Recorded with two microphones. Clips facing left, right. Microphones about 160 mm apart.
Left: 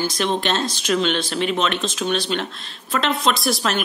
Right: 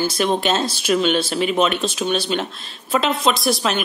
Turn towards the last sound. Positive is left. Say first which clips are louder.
# right 2 dB
turn(degrees=0)  # may be behind; listen again after turning